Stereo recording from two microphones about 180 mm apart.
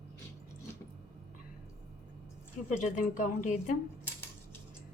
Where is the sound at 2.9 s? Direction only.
45° left (ahead or behind).